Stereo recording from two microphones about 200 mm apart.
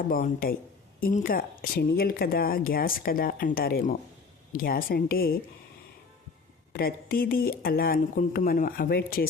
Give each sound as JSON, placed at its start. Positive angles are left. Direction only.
{"t": 0.1, "sound": "speech", "side_deg": 45}
{"t": 6.7, "sound": "speech", "side_deg": 45}